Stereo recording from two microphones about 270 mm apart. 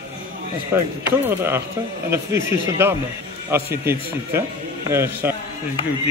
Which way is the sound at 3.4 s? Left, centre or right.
Centre.